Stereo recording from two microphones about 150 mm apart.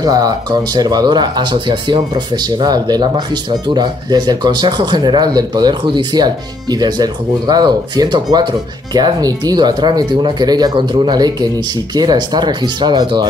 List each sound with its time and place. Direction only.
0.0 s speech: 25° right (ahead or behind)